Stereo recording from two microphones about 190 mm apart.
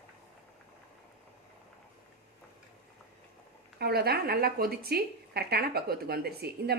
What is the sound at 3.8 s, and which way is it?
Speech, 55° right (ahead or behind).